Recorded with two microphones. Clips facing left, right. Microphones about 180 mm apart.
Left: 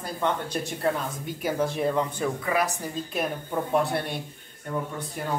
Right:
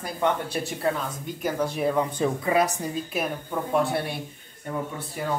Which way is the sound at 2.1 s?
20° right (ahead or behind).